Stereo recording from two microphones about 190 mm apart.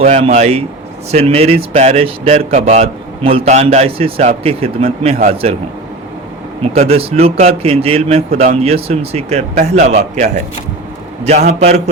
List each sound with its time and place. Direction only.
0.0 s speech: 35° right (ahead or behind)
6.6 s speech: 30° right (ahead or behind)